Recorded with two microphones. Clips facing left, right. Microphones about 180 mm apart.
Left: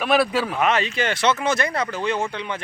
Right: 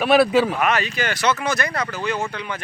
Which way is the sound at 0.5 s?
25° left (ahead or behind).